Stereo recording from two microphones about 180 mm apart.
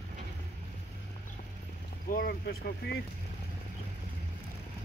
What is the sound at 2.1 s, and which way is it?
Speech, 55° left (ahead or behind).